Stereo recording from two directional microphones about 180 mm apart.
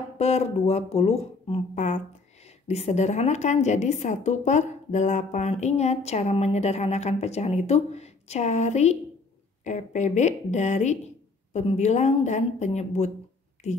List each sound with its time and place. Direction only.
0.2 s a woman's voice: 35° left (ahead or behind)